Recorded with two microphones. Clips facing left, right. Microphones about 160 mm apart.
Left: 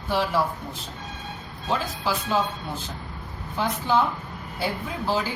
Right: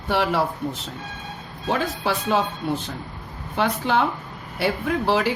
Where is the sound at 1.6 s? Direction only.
65° right (ahead or behind).